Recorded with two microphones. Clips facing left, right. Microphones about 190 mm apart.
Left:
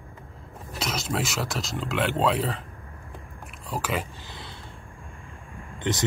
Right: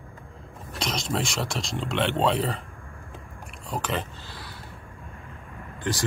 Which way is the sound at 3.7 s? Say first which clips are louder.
Even; 10° left (ahead or behind).